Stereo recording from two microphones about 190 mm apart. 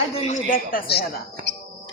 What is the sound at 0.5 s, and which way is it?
Speech, 50° left (ahead or behind).